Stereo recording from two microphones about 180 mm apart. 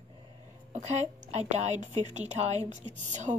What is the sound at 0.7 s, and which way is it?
A woman's voice, 40° right (ahead or behind).